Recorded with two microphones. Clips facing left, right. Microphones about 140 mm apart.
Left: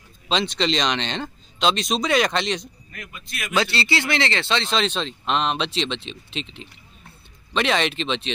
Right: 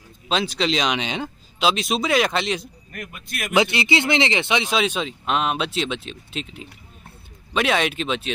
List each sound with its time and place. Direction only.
0.3 s speech: 5° right (ahead or behind)
2.9 s speech: 55° right (ahead or behind)
3.5 s speech: 15° right (ahead or behind)